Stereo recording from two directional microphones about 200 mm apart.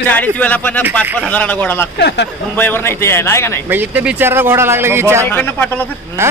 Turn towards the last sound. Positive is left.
turn(degrees=-10)  # may be behind; listen again after turning